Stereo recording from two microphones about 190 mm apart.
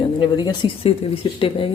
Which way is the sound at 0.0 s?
25° left (ahead or behind).